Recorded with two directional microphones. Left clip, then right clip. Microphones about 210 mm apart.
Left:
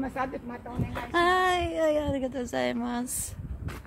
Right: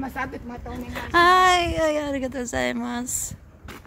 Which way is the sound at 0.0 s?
50° right (ahead or behind).